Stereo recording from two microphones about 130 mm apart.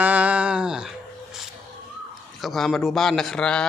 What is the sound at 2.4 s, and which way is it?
Speech, centre (ahead or behind).